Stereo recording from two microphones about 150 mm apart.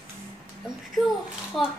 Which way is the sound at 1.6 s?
Centre (ahead or behind).